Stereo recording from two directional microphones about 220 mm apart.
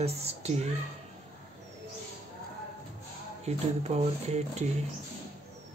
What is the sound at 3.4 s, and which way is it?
Speech, 30° right (ahead or behind).